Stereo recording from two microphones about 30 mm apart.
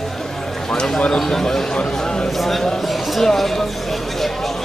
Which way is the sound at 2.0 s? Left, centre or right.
Left.